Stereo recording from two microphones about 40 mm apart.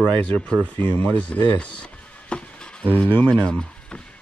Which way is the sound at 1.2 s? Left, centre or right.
Left.